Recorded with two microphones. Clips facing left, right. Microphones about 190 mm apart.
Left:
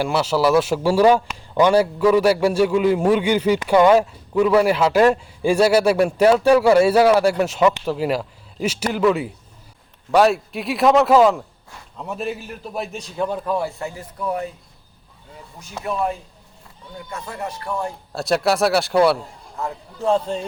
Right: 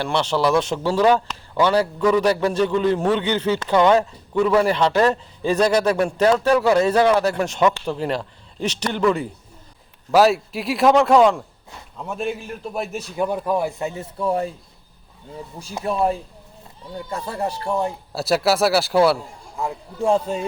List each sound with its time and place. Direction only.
0.0 s a man's voice: 5° left (ahead or behind); by 14.5 s 30° right (ahead or behind)
15.8 s speech: 35° right (ahead or behind)
18.1 s speech: 5° right (ahead or behind)
19.5 s a man's voice: 15° right (ahead or behind)